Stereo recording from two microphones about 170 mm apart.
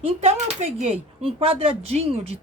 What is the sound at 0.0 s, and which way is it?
Speech, 35° right (ahead or behind).